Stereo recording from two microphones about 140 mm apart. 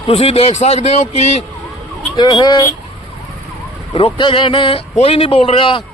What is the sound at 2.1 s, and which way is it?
Speech, 30° left (ahead or behind).